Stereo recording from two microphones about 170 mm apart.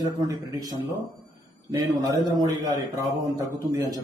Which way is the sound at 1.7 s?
20° right (ahead or behind).